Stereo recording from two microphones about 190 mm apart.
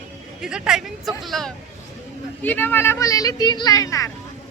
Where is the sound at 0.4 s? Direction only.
5° right (ahead or behind).